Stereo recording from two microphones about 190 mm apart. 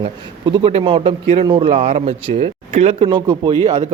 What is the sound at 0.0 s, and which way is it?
A man's voice, 25° right (ahead or behind).